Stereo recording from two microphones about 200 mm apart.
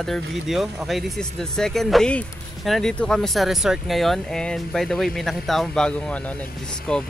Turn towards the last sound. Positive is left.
turn(degrees=5)  # may be behind; listen again after turning